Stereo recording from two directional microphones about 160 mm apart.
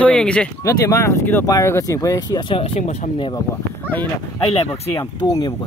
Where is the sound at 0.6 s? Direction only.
20° left (ahead or behind); by 3.1 s 45° left (ahead or behind).